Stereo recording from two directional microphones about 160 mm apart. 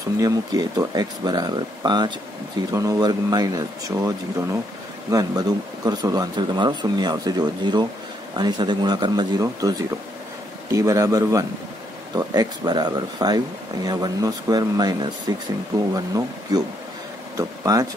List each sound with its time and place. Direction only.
0.2 s speech: 25° right (ahead or behind)
16.5 s speech: 25° right (ahead or behind)